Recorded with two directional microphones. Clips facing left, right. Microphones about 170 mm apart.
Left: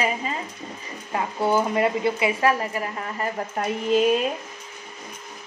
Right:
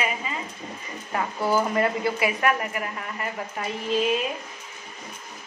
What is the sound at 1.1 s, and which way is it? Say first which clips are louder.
A woman's voice: left 2 dB; 25° left (ahead or behind).